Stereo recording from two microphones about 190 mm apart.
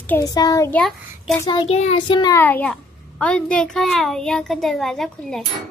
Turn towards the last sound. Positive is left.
turn(degrees=0)  # may be behind; listen again after turning